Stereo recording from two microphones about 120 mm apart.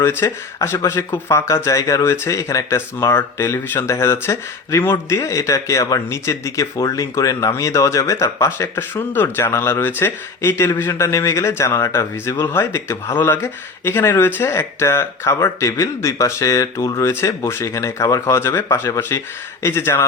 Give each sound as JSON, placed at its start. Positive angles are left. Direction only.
{"t": 0.0, "sound": "speech", "side_deg": 20}